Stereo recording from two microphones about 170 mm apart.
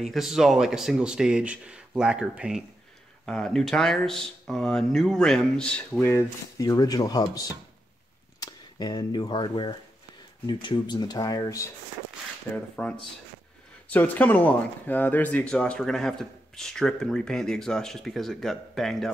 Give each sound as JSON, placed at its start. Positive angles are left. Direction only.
{"t": 0.0, "sound": "speech", "side_deg": 0}
{"t": 12.5, "sound": "speech", "side_deg": 10}